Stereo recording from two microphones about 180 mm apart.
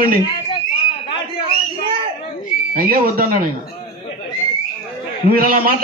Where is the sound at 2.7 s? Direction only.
55° right (ahead or behind).